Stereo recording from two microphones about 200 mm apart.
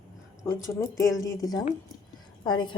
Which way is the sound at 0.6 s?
15° left (ahead or behind).